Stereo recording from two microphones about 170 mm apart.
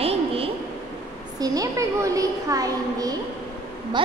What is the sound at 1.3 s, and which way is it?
A child's voice, 20° right (ahead or behind).